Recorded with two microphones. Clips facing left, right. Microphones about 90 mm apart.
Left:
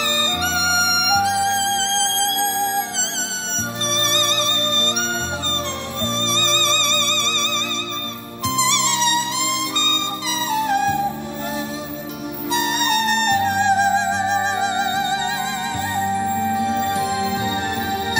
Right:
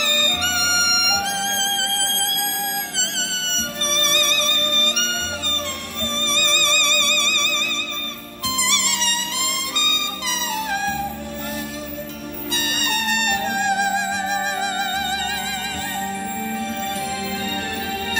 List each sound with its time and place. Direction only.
0.0 s music: 15° left (ahead or behind)
3.9 s music: 25° left (ahead or behind)
6.3 s music: 25° left (ahead or behind)
8.5 s music: 25° left (ahead or behind)
10.5 s music: 20° left (ahead or behind)
12.4 s music: 20° left (ahead or behind)